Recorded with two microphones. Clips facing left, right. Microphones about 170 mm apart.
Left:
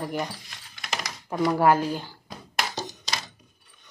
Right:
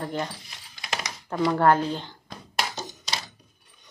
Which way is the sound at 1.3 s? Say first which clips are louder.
Even; 10° left (ahead or behind).